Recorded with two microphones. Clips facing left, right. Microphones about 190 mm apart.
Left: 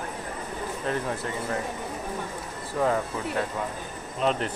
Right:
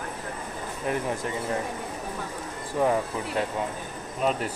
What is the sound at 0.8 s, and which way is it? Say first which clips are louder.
Speech: right 2 dB; 15° right (ahead or behind).